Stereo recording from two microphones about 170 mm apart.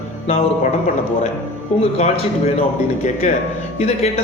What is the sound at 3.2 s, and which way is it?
Speech, 45° left (ahead or behind).